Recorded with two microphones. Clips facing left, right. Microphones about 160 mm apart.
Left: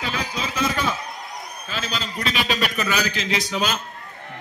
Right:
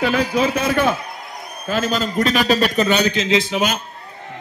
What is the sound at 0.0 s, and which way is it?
A man's voice, 55° right (ahead or behind).